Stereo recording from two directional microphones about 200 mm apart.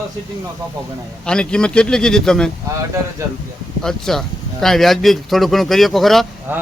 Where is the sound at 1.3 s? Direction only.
5° left (ahead or behind).